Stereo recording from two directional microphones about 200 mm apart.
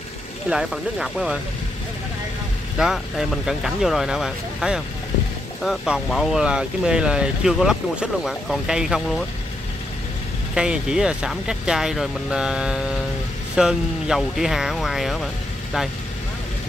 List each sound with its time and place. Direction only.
0.5 s speech: 5° right (ahead or behind)
2.8 s speech: centre (ahead or behind)
10.5 s speech: 5° right (ahead or behind)